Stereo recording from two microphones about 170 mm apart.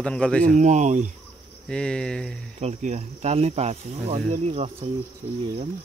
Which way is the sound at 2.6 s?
40° right (ahead or behind).